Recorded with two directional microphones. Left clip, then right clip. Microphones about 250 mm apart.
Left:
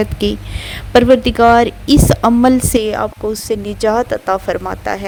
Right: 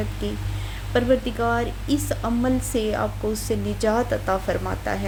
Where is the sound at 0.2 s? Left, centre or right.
Left.